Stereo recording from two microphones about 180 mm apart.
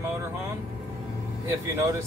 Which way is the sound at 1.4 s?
15° right (ahead or behind).